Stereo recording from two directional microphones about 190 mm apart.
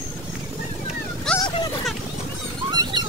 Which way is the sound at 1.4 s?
25° left (ahead or behind).